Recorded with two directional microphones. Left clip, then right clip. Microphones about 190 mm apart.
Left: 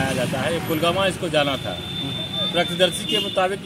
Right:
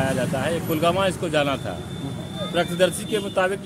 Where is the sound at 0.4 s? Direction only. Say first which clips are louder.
Left 1 dB; 20° right (ahead or behind).